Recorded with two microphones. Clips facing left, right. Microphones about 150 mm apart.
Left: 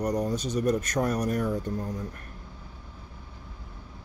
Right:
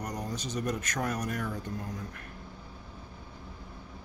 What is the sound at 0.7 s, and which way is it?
Speech, 35° left (ahead or behind).